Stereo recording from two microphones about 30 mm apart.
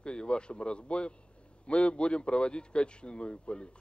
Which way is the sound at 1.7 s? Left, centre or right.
Left.